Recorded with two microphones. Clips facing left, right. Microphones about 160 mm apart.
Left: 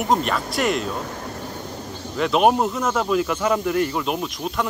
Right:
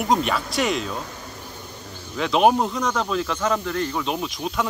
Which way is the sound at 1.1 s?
75° left (ahead or behind).